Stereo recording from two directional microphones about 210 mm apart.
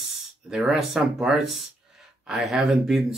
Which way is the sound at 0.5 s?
5° right (ahead or behind).